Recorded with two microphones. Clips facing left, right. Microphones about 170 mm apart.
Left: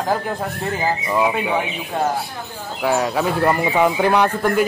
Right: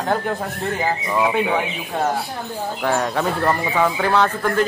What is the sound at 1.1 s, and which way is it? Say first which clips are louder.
Speech: right 1 dB; 5° left (ahead or behind).